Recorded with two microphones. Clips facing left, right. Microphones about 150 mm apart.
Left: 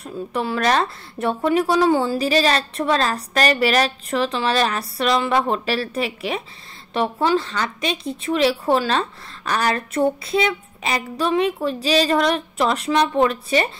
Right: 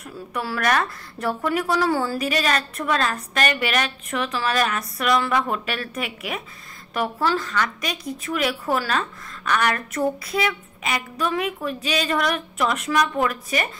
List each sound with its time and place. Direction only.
0.0 s speech: 25° left (ahead or behind)
2.1 s a woman's voice: 30° left (ahead or behind)